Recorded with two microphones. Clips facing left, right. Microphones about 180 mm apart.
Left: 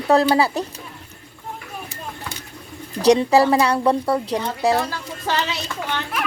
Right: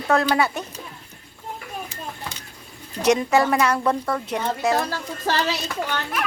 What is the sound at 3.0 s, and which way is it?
Speech, 35° left (ahead or behind).